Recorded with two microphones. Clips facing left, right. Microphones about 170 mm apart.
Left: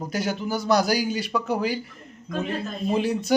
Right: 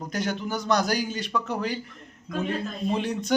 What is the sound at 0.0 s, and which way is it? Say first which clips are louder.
Speech: left 2 dB; 5° left (ahead or behind).